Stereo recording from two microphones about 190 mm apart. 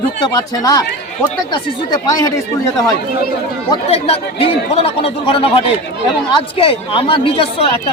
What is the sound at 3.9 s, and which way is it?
Speech, 30° left (ahead or behind).